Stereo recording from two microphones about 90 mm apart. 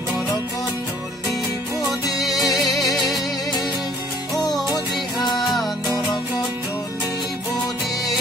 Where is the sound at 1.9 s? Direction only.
Centre (ahead or behind).